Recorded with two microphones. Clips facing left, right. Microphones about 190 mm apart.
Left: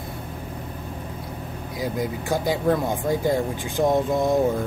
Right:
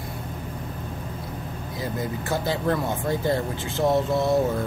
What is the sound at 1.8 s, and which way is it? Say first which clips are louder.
Speech: left 3 dB; 15° left (ahead or behind).